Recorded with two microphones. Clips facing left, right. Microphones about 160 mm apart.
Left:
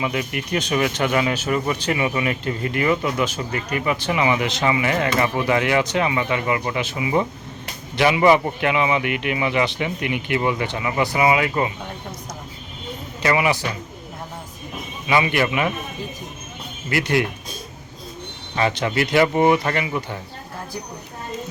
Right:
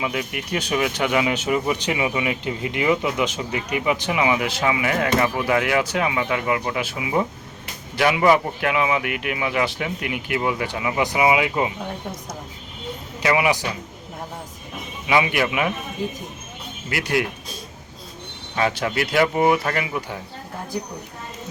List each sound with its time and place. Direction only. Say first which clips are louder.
0.0 s speech: left 2 dB; 5° right (ahead or behind)
13.2 s speech: even; 10° right (ahead or behind)
15.0 s speech: left 1 dB; 10° right (ahead or behind)
16.9 s speech: left 2 dB; 5° right (ahead or behind)
18.5 s speech: left 1 dB; 5° right (ahead or behind)